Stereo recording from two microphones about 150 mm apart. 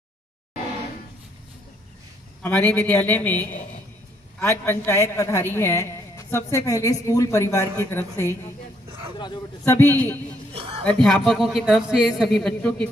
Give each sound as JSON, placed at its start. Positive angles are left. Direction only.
{"t": 2.4, "sound": "a man's voice", "side_deg": 15}
{"t": 9.7, "sound": "a man's voice", "side_deg": 15}
{"t": 10.5, "sound": "a sound", "side_deg": -40}
{"t": 10.9, "sound": "speech", "side_deg": 5}